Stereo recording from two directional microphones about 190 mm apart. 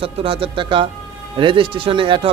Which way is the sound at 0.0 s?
30° right (ahead or behind).